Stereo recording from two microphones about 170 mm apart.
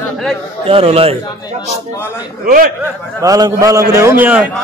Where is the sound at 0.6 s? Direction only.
35° right (ahead or behind).